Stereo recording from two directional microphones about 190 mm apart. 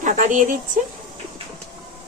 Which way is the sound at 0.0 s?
40° right (ahead or behind).